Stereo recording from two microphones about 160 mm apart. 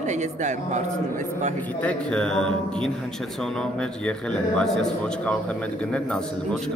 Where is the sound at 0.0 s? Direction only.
50° right (ahead or behind).